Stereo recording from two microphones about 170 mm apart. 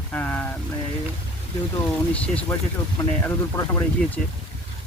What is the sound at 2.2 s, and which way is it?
Speech, 10° left (ahead or behind).